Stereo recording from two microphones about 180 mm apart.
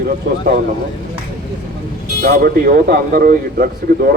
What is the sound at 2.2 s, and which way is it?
Speech, 55° right (ahead or behind).